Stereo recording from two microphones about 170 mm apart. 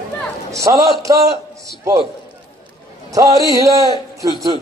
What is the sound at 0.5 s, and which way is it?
Speech, 20° right (ahead or behind).